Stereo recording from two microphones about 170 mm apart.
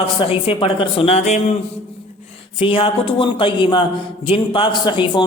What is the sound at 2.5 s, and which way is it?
A man's voice, 30° left (ahead or behind).